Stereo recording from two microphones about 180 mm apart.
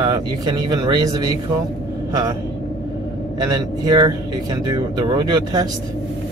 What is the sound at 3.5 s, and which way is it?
Speech, 20° right (ahead or behind).